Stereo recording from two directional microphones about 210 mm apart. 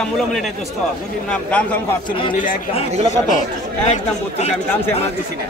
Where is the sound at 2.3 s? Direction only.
40° left (ahead or behind).